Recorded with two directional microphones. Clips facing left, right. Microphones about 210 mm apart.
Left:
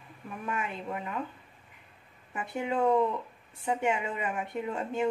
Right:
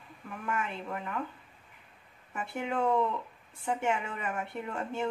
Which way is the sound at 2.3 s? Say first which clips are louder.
Left 2 dB; 15° left (ahead or behind).